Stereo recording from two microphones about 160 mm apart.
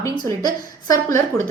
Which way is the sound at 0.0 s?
20° left (ahead or behind).